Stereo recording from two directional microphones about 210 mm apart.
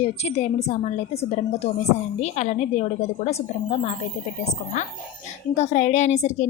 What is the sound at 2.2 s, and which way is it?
A woman's voice, 35° left (ahead or behind).